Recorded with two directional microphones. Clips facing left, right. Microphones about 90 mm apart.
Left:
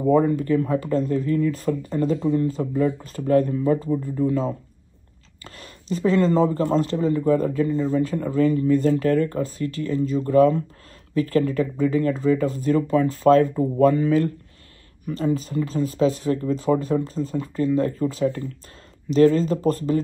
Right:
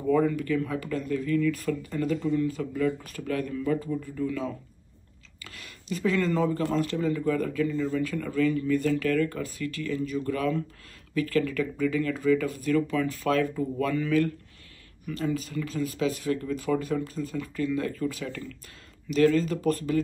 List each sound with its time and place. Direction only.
0.0 s speech: 35° left (ahead or behind)